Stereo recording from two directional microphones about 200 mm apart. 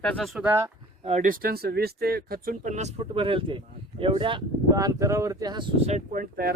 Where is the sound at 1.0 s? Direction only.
35° right (ahead or behind); by 5.6 s 20° right (ahead or behind).